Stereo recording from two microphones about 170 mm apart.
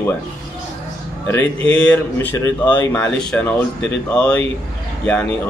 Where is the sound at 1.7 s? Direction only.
5° left (ahead or behind).